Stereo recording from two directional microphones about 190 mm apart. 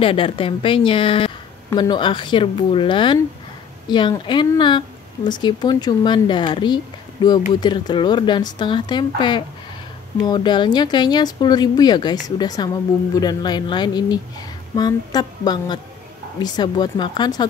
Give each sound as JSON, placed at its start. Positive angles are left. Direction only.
{"t": 0.0, "sound": "a woman's voice", "side_deg": 30}